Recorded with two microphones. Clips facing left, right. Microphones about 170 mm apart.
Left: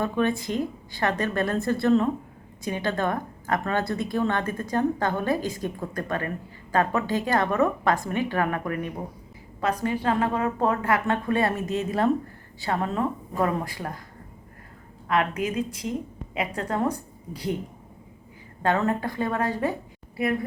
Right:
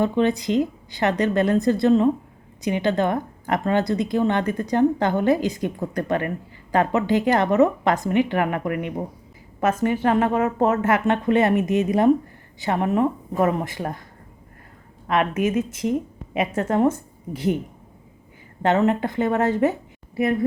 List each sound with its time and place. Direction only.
0.0 s a woman's voice: 20° right (ahead or behind)
15.0 s a woman's voice: 20° right (ahead or behind)
18.6 s a woman's voice: 20° right (ahead or behind)